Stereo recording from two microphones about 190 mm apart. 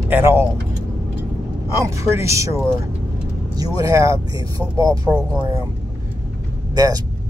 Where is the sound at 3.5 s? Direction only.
20° right (ahead or behind).